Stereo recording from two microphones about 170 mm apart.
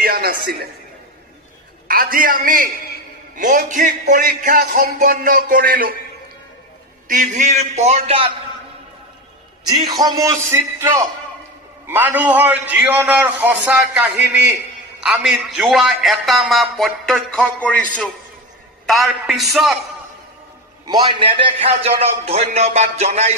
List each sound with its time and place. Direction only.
0.0 s music: 65° right (ahead or behind)
1.9 s a man's voice: 55° right (ahead or behind)
7.1 s speech: 50° right (ahead or behind)
9.7 s a man's voice: 25° right (ahead or behind); by 19.7 s centre (ahead or behind)
20.8 s a man's voice: 25° right (ahead or behind)